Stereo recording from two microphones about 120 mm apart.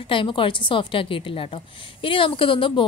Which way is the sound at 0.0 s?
45° left (ahead or behind).